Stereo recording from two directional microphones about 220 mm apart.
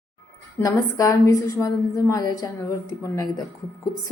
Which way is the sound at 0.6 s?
15° left (ahead or behind).